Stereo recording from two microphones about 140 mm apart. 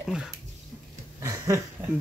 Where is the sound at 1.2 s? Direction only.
20° right (ahead or behind).